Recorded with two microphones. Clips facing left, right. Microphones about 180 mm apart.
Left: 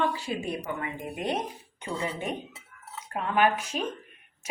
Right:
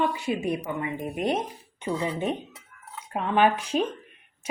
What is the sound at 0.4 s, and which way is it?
Speech, 20° right (ahead or behind).